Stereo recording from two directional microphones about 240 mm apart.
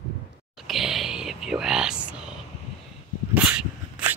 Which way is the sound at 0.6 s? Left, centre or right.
Centre.